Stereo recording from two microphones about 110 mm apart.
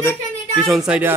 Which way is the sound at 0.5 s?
Centre (ahead or behind).